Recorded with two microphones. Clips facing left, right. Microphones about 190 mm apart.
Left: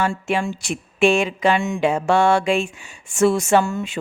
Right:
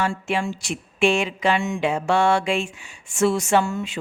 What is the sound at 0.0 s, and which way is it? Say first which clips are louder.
Mantra: left 2 dB; 50° left (ahead or behind).